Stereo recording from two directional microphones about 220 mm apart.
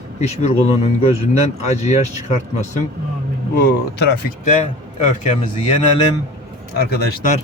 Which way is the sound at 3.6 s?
40° left (ahead or behind).